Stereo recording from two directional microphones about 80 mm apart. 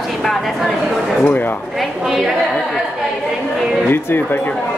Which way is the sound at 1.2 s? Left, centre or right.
Left.